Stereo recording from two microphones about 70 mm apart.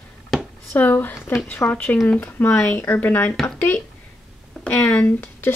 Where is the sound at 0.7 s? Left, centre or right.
Left.